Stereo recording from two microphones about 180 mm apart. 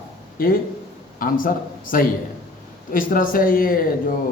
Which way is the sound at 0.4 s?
50° left (ahead or behind).